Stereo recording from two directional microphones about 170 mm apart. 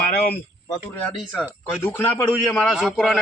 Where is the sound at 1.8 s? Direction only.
10° left (ahead or behind).